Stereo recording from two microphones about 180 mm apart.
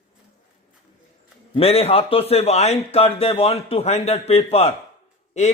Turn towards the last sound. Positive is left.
turn(degrees=40)  # may be behind; listen again after turning